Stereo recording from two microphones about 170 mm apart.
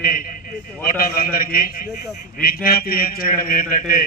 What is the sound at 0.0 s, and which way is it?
A man's voice, 55° left (ahead or behind).